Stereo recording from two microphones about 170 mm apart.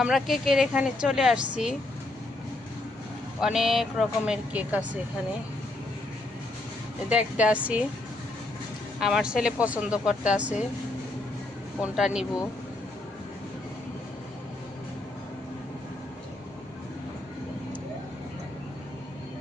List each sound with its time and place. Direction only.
0.0 s a woman's voice: centre (ahead or behind)
3.4 s a woman's voice: centre (ahead or behind)
7.1 s speech: 5° right (ahead or behind)
9.0 s speech: 5° right (ahead or behind)
11.8 s a woman's voice: 5° right (ahead or behind)